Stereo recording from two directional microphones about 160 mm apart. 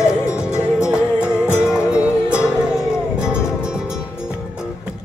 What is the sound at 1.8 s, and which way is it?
Music, 20° left (ahead or behind).